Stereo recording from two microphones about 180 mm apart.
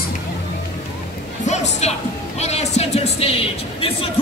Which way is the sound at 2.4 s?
35° left (ahead or behind).